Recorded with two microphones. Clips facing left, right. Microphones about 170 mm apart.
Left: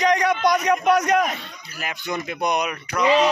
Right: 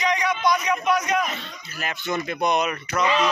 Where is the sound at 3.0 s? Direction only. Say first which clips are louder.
Left 5 dB; 35° left (ahead or behind).